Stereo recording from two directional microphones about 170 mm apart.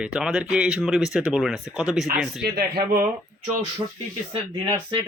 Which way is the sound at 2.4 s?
65° right (ahead or behind).